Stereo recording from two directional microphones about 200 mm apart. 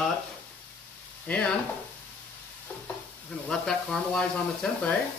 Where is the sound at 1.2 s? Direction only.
5° left (ahead or behind).